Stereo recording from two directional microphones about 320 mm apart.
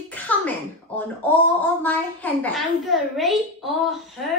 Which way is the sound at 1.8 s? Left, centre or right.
Centre.